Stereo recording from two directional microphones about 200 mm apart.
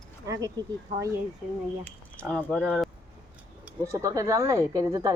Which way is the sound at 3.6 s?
15° right (ahead or behind).